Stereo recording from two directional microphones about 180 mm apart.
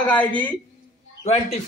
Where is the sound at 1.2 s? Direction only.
40° left (ahead or behind).